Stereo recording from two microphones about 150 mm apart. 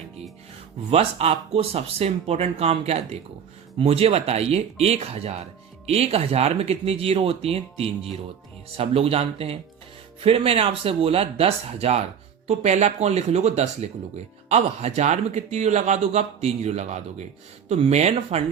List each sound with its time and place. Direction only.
0.9 s speech: 40° right (ahead or behind)